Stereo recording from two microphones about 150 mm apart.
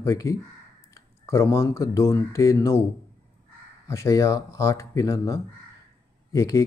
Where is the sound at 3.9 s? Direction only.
20° left (ahead or behind).